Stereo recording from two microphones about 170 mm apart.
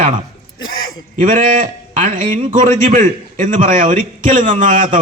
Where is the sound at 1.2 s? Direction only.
50° right (ahead or behind).